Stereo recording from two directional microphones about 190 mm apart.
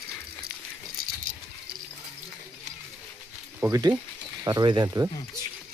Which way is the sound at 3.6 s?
15° right (ahead or behind).